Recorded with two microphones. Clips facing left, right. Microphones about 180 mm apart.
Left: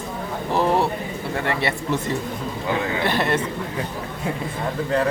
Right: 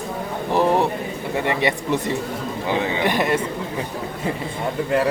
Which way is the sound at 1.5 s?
15° right (ahead or behind).